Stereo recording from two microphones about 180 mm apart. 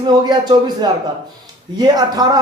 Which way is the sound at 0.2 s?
25° right (ahead or behind).